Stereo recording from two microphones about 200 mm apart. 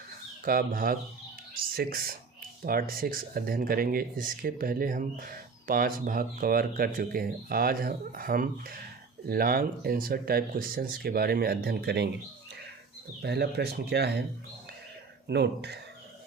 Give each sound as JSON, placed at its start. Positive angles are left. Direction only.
{"t": 0.4, "sound": "speech", "side_deg": -45}
{"t": 13.2, "sound": "speech", "side_deg": -55}
{"t": 15.3, "sound": "speech", "side_deg": -55}